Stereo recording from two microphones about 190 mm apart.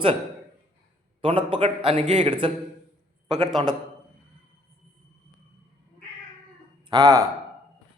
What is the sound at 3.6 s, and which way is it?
Speech, 25° right (ahead or behind).